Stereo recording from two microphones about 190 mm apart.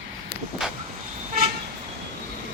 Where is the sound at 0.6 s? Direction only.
5° right (ahead or behind).